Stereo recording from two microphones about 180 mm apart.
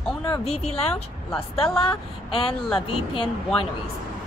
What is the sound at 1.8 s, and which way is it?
Speech, 30° left (ahead or behind).